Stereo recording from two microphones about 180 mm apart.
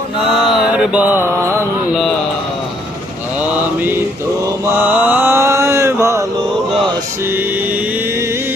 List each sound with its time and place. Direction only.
0.4 s mantra: 5° right (ahead or behind)
4.6 s mantra: 10° right (ahead or behind)